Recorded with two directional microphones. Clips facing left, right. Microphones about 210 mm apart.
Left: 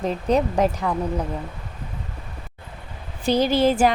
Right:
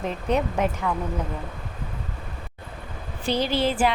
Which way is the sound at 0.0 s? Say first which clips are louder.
Left 4 dB; 35° left (ahead or behind).